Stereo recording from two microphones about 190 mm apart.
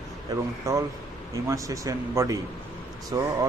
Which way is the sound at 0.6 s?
15° right (ahead or behind).